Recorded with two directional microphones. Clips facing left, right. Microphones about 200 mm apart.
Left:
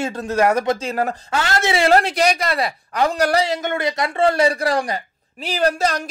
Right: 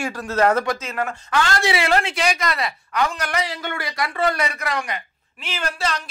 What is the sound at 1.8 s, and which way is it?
A woman's voice, 40° left (ahead or behind).